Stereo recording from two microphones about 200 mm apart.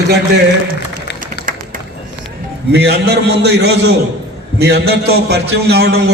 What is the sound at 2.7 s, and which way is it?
A man's voice, 55° right (ahead or behind).